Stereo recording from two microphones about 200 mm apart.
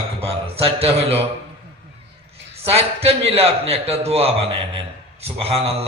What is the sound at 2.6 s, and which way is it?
A man's voice, 30° right (ahead or behind).